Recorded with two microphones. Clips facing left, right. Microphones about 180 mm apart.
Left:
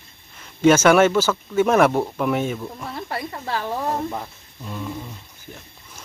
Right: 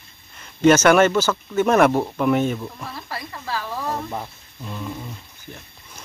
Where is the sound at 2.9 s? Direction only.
25° left (ahead or behind).